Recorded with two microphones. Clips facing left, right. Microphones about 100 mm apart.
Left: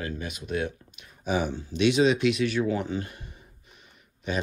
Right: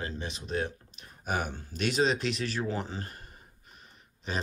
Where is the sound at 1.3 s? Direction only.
50° right (ahead or behind).